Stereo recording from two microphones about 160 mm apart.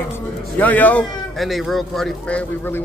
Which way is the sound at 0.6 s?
10° left (ahead or behind).